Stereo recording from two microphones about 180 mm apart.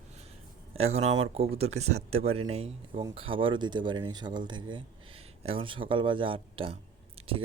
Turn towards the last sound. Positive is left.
turn(degrees=-30)  # may be behind; listen again after turning